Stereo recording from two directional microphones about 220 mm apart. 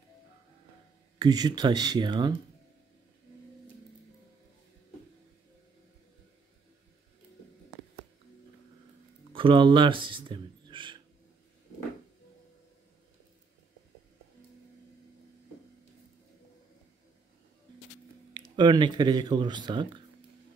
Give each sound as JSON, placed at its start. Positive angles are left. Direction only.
{"t": 1.2, "sound": "speech", "side_deg": -20}
{"t": 9.3, "sound": "speech", "side_deg": -25}
{"t": 18.6, "sound": "speech", "side_deg": -20}